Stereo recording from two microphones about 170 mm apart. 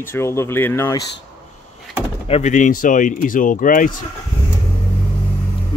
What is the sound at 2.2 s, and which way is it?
Speech, 40° left (ahead or behind).